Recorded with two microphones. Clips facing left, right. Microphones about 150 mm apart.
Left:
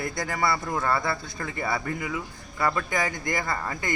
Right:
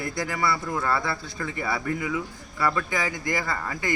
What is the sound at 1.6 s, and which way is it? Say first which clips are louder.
Speech: even; 25° left (ahead or behind).